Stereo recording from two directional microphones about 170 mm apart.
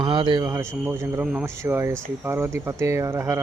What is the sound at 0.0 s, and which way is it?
Speech, 25° right (ahead or behind).